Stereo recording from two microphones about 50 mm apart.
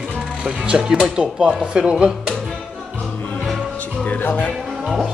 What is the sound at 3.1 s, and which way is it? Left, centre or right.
Music, left.